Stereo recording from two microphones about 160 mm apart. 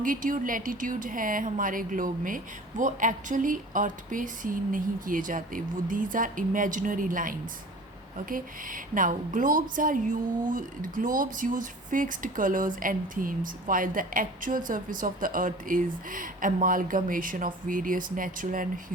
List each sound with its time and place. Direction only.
0.0 s a woman's voice: 55° right (ahead or behind)